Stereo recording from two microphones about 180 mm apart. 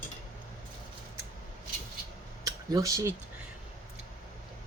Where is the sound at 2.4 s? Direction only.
20° right (ahead or behind).